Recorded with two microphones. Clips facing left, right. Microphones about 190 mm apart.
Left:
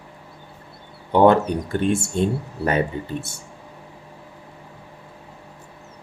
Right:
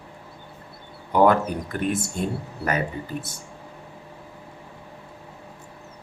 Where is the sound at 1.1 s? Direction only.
25° left (ahead or behind).